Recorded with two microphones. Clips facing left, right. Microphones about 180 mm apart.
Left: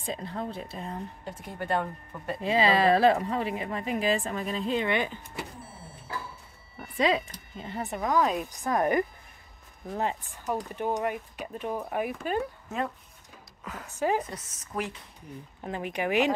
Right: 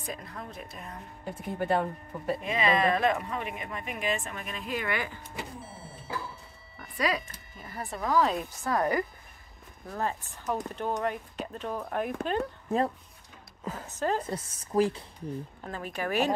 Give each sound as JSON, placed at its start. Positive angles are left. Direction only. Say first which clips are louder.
{"t": 0.0, "sound": "speech", "louder": "left 6 dB", "side_deg": 25}
{"t": 1.2, "sound": "speech", "louder": "right 4 dB", "side_deg": -5}
{"t": 2.4, "sound": "speech", "louder": "left 4 dB", "side_deg": 30}
{"t": 7.0, "sound": "speech", "louder": "left 4 dB", "side_deg": 25}
{"t": 12.6, "sound": "speech", "louder": "right 5 dB", "side_deg": -30}
{"t": 13.9, "sound": "speech", "louder": "left 2 dB", "side_deg": 10}
{"t": 14.3, "sound": "speech", "louder": "right 7 dB", "side_deg": -30}
{"t": 15.6, "sound": "speech", "louder": "left 6 dB", "side_deg": 15}